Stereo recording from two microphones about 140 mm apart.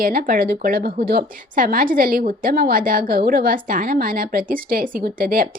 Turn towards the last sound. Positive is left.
turn(degrees=-90)